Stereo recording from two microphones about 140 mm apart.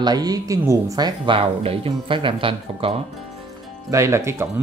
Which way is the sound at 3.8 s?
20° right (ahead or behind).